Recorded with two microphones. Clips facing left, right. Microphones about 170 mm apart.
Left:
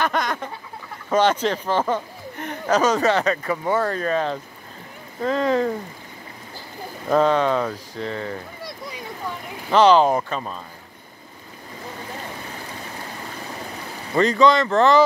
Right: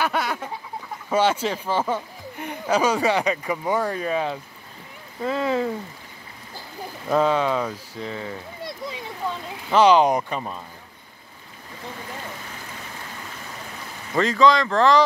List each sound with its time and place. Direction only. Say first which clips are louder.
0.0 s speech: left 1 dB; 10° right (ahead or behind)
7.1 s speech: left 2 dB; 5° right (ahead or behind)
8.6 s a sound: right 2 dB; 25° right (ahead or behind)
9.7 s speech: left 1 dB; 10° right (ahead or behind)
14.1 s speech: left 2 dB; centre (ahead or behind)